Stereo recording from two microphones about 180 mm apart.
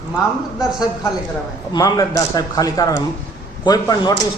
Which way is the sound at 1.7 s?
20° left (ahead or behind).